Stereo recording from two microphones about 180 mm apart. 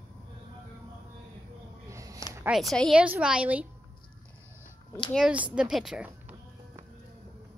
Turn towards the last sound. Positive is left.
turn(degrees=-10)  # may be behind; listen again after turning